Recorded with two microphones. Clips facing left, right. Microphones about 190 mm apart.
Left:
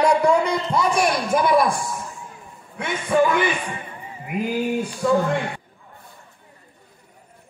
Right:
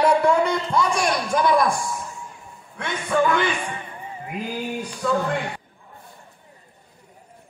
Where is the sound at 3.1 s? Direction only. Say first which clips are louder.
Left 2 dB; 20° left (ahead or behind).